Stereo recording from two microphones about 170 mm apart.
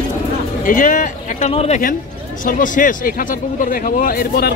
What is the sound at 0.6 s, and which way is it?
Speech, 50° left (ahead or behind).